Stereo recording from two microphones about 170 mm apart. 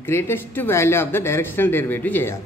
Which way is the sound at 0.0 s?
15° left (ahead or behind).